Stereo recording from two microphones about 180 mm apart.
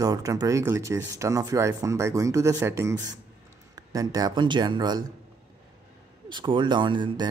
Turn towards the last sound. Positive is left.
turn(degrees=-25)  # may be behind; listen again after turning